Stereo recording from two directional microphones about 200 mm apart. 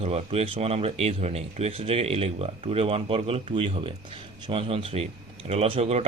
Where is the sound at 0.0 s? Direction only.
30° right (ahead or behind).